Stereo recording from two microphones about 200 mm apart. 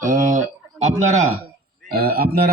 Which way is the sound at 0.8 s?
35° right (ahead or behind).